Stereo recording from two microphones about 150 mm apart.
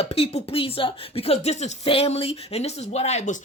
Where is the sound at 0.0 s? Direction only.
40° left (ahead or behind).